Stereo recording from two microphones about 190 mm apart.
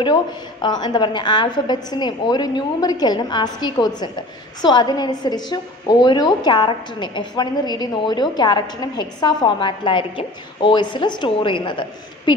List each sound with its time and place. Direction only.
0.0 s a woman's voice: 25° left (ahead or behind)